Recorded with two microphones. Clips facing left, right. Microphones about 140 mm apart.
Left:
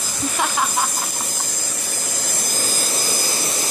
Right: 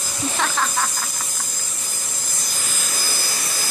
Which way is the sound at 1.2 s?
75° left (ahead or behind).